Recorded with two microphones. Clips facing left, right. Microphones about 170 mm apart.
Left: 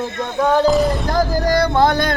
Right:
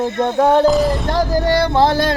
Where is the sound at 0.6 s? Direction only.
Centre (ahead or behind).